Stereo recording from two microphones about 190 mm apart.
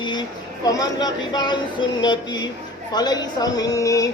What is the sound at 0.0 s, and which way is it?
Speech, 20° left (ahead or behind).